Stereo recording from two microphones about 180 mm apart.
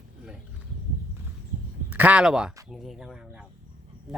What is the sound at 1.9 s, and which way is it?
Speech, 10° right (ahead or behind).